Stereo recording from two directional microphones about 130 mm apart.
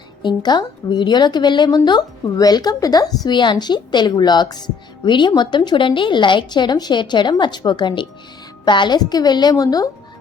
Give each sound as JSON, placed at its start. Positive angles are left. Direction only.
{"t": 0.2, "sound": "a woman's voice", "side_deg": 35}